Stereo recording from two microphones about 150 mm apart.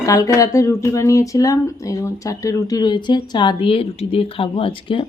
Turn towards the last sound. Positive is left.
turn(degrees=35)  # may be behind; listen again after turning